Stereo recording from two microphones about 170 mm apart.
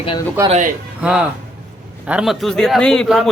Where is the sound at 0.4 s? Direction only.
15° right (ahead or behind).